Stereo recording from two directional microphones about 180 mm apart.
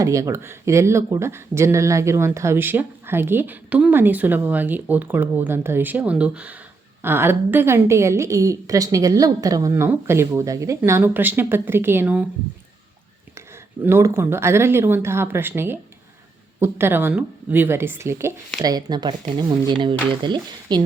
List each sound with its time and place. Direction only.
0.0 s speech: 15° right (ahead or behind)
13.8 s speech: 15° right (ahead or behind)